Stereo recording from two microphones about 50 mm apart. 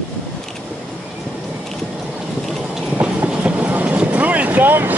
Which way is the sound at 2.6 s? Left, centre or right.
Centre.